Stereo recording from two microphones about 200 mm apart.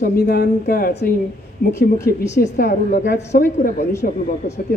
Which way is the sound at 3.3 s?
45° left (ahead or behind).